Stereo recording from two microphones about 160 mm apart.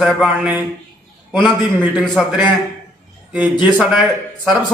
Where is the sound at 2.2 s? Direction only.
Centre (ahead or behind).